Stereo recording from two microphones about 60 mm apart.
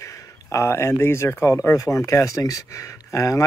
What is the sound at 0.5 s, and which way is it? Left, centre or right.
Speech, left.